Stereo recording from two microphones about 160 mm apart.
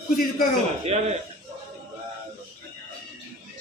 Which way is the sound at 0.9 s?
40° right (ahead or behind).